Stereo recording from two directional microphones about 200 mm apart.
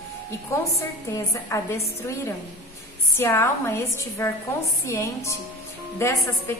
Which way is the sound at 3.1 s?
10° left (ahead or behind).